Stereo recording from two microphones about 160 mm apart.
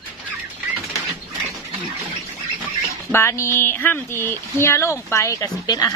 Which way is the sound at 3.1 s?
15° left (ahead or behind).